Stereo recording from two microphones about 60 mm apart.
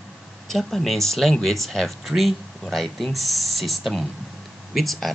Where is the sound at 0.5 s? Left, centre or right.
Centre.